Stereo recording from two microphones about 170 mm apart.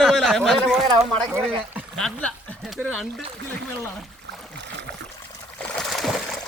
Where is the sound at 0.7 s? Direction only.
15° right (ahead or behind).